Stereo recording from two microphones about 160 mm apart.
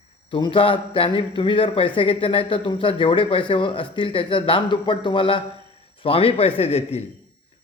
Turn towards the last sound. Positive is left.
turn(degrees=40)  # may be behind; listen again after turning